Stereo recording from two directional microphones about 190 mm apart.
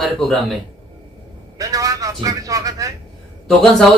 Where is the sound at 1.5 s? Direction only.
20° right (ahead or behind).